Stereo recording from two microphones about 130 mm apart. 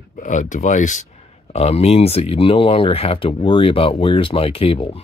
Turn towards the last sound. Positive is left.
turn(degrees=45)  # may be behind; listen again after turning